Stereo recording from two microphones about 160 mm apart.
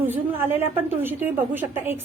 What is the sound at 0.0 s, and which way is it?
A woman's voice, 10° right (ahead or behind).